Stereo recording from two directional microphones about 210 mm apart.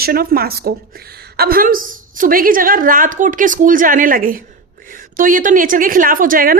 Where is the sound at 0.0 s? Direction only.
45° right (ahead or behind).